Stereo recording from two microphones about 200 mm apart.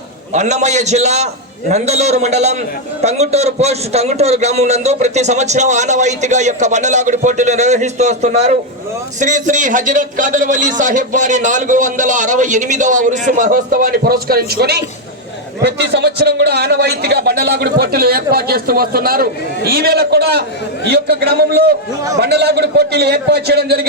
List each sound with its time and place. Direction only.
0.3 s a man's voice: 35° right (ahead or behind); by 23.8 s 55° right (ahead or behind)